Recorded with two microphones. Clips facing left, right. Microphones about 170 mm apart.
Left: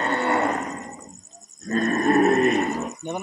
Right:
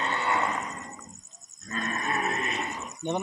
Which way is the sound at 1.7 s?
50° left (ahead or behind).